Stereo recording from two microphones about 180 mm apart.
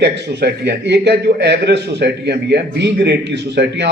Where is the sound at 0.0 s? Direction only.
70° right (ahead or behind).